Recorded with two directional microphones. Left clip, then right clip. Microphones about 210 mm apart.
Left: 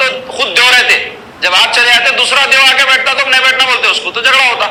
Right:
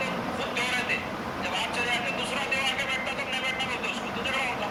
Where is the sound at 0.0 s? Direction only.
50° left (ahead or behind).